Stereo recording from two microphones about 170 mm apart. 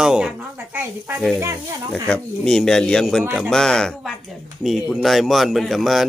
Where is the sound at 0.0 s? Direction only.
5° right (ahead or behind).